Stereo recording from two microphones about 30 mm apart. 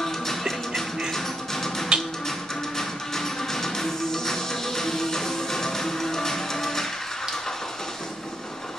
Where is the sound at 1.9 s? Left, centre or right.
Right.